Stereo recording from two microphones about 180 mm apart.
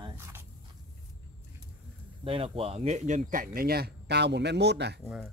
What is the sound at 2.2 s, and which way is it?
Speech, 30° right (ahead or behind).